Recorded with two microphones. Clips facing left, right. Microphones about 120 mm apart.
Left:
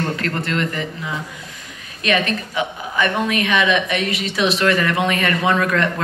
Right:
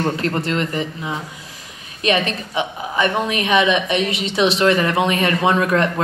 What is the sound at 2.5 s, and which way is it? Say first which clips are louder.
A woman's voice: right 1 dB; 30° right (ahead or behind).